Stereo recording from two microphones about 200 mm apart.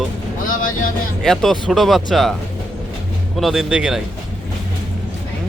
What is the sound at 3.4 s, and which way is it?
Speech, centre (ahead or behind).